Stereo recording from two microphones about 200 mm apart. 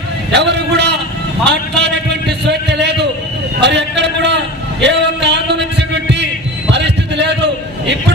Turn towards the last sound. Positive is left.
turn(degrees=-60)  # may be behind; listen again after turning